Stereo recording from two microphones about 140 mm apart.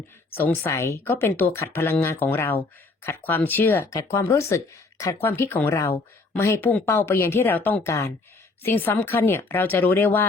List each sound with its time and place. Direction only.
0.3 s speech: 15° left (ahead or behind)